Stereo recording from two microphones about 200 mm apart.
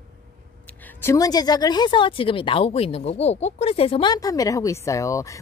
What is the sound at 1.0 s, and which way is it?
Speech, 20° left (ahead or behind).